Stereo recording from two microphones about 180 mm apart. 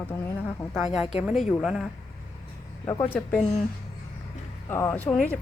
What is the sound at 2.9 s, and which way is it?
Speech, 15° left (ahead or behind).